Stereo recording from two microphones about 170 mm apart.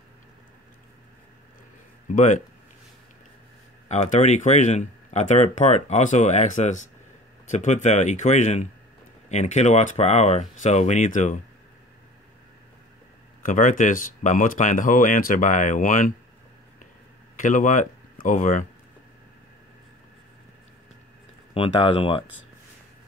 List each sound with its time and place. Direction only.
2.0 s speech: 45° left (ahead or behind)
3.9 s speech: 45° left (ahead or behind)
13.5 s speech: 50° left (ahead or behind)
17.4 s speech: 50° left (ahead or behind)
21.5 s speech: 30° left (ahead or behind)